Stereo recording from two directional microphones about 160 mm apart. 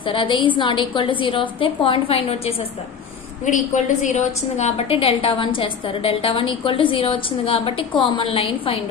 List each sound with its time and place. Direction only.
0.0 s a woman's voice: 35° left (ahead or behind)
3.4 s a woman's voice: 50° left (ahead or behind)